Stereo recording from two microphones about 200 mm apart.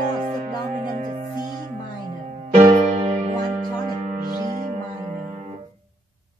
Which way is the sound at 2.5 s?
35° right (ahead or behind).